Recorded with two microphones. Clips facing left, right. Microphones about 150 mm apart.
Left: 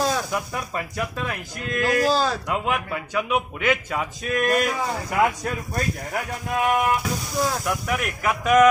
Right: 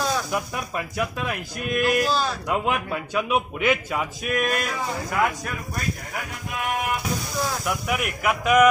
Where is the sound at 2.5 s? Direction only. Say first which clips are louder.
Right 1 dB; 20° right (ahead or behind).